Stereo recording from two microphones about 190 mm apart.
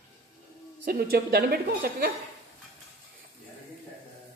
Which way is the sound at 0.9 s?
50° right (ahead or behind).